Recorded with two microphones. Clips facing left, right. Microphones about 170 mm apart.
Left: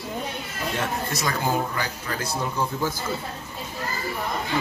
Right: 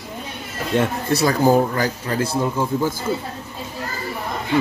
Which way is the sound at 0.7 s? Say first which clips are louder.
Right 10 dB; 35° right (ahead or behind).